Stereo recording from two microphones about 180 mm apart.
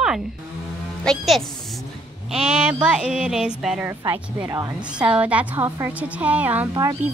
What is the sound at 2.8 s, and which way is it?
Speech, 5° right (ahead or behind).